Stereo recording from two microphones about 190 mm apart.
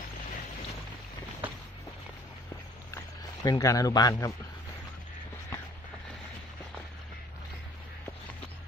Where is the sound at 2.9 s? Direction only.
20° left (ahead or behind).